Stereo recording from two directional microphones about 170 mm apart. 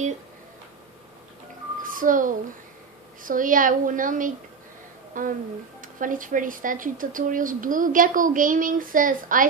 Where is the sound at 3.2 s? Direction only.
50° right (ahead or behind).